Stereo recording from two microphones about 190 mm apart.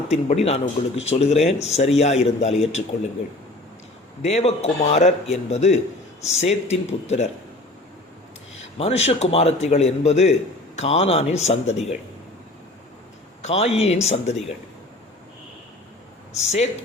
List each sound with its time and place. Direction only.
0.1 s a man's voice: 35° left (ahead or behind)
4.2 s a man's voice: 35° left (ahead or behind)
8.8 s a man's voice: 35° left (ahead or behind)
13.4 s a man's voice: 35° left (ahead or behind)
16.3 s a man's voice: 35° left (ahead or behind)